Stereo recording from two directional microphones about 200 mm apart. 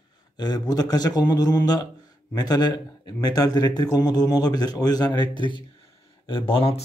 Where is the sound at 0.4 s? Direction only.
20° left (ahead or behind).